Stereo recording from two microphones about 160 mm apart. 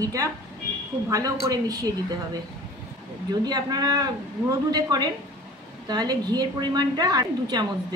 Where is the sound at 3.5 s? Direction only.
25° right (ahead or behind).